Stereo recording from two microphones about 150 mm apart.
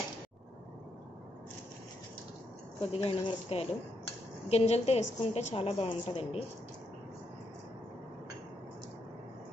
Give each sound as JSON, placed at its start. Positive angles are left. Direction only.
{"t": 2.9, "sound": "a woman's voice", "side_deg": 40}